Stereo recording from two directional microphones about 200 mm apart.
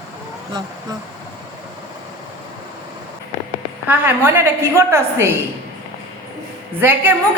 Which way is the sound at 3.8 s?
10° right (ahead or behind).